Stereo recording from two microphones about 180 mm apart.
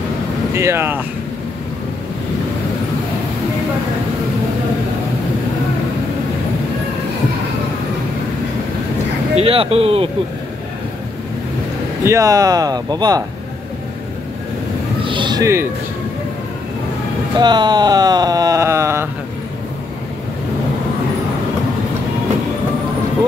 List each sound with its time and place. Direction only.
0.6 s speech: 15° right (ahead or behind)
9.3 s speech: 30° right (ahead or behind)
12.0 s speech: 15° right (ahead or behind)
15.0 s a sound: 25° right (ahead or behind)
17.4 s speech: 25° right (ahead or behind)